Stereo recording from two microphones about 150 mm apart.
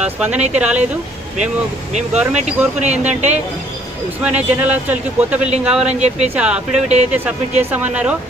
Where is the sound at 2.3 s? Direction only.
50° right (ahead or behind).